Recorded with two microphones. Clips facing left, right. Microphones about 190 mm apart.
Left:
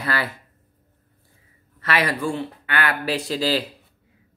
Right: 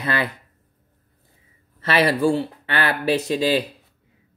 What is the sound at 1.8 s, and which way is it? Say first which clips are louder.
Speech: right 4 dB; 30° right (ahead or behind).